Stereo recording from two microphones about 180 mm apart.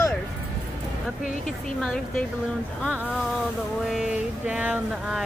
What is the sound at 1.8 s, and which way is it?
Music, 5° left (ahead or behind).